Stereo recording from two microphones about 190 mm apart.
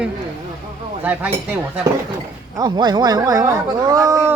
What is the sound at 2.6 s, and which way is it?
Speech, 20° right (ahead or behind).